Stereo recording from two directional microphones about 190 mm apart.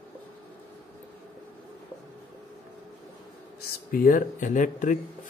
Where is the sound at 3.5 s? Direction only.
45° left (ahead or behind).